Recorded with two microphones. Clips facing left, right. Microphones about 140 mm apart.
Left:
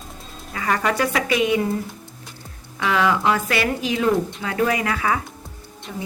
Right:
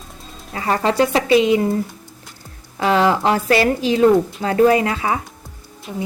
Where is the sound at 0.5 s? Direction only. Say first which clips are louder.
Right 4 dB; 30° right (ahead or behind).